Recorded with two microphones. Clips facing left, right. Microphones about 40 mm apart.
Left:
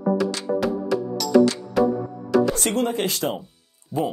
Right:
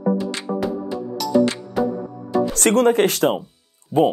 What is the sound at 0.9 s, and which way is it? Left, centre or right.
Music, left.